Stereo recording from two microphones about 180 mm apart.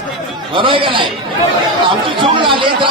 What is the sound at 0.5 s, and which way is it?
Speech, 30° right (ahead or behind).